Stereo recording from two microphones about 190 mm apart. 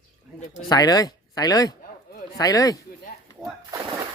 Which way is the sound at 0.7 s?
20° left (ahead or behind).